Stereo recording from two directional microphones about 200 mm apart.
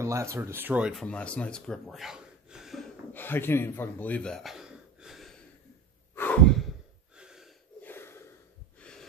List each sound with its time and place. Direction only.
0.0 s speech: 15° right (ahead or behind)
3.1 s speech: 10° left (ahead or behind)
6.1 s sigh: 10° left (ahead or behind)
7.2 s a sound: 5° right (ahead or behind)
7.8 s snort: 10° left (ahead or behind)
8.7 s gasp: 5° left (ahead or behind)